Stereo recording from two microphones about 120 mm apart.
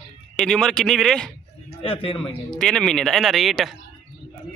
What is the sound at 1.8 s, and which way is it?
Speech, 50° left (ahead or behind).